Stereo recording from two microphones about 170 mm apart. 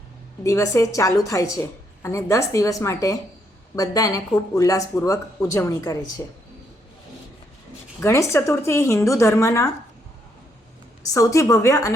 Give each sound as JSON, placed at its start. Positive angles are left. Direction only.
{"t": 0.4, "sound": "a woman's voice", "side_deg": 20}
{"t": 8.0, "sound": "speech", "side_deg": 15}
{"t": 11.1, "sound": "a woman's voice", "side_deg": 20}